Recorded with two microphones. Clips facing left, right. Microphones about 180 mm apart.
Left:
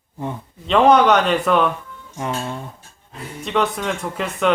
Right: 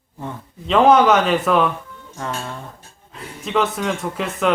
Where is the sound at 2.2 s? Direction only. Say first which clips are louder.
Left 3 dB; 15° left (ahead or behind).